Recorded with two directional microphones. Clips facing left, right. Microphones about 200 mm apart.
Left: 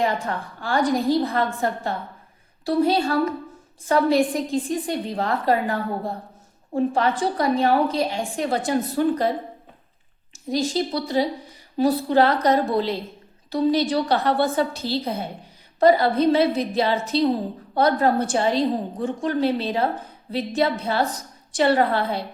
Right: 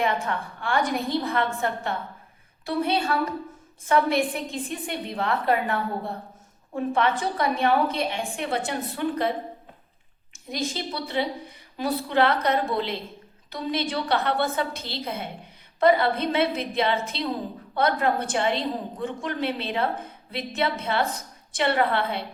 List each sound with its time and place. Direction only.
0.0 s a woman's voice: 35° left (ahead or behind)
10.5 s a woman's voice: 35° left (ahead or behind)